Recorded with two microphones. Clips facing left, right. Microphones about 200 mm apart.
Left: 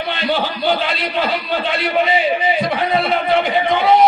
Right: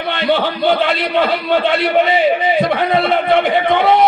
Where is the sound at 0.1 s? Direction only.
60° right (ahead or behind).